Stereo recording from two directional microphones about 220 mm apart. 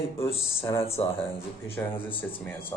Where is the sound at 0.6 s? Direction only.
15° left (ahead or behind).